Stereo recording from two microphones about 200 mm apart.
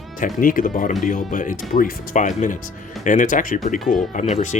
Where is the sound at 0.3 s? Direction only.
45° left (ahead or behind).